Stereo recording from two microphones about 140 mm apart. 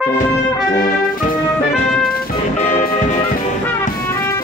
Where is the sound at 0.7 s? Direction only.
80° left.